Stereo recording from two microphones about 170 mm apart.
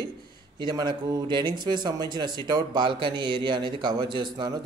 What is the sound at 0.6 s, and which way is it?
Speech, 25° right (ahead or behind).